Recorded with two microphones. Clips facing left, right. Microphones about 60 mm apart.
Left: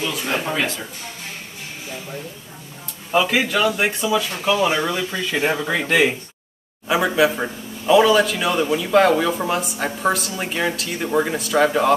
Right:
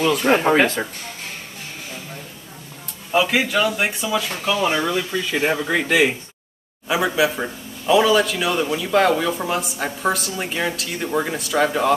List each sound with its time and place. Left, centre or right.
0.0 s speech: right
3.1 s a man's voice: centre
7.2 s a man's voice: centre